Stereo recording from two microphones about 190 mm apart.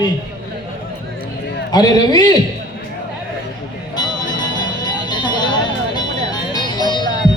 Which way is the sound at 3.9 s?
20° left (ahead or behind).